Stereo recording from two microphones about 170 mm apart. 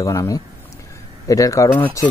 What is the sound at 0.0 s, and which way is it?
Speech, 20° left (ahead or behind).